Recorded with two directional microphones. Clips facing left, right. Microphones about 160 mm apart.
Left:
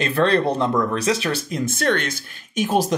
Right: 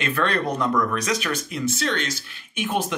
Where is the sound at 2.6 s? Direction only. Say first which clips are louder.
Left 5 dB; 35° left (ahead or behind).